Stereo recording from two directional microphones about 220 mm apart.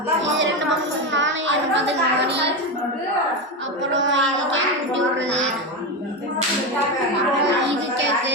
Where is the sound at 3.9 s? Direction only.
55° right (ahead or behind).